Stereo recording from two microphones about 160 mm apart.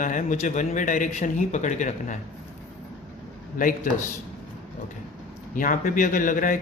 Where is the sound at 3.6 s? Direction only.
60° left (ahead or behind).